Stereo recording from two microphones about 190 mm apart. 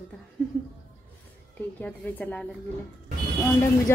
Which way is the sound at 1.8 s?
10° left (ahead or behind).